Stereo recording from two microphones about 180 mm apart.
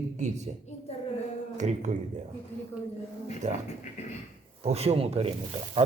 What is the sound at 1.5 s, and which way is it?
Speech, 40° right (ahead or behind).